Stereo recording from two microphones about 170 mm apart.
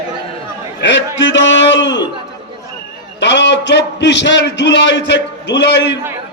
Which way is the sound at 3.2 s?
90° left.